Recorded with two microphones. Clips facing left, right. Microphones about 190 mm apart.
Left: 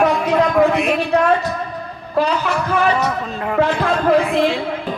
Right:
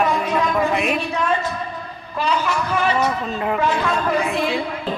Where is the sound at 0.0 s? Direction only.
65° left (ahead or behind).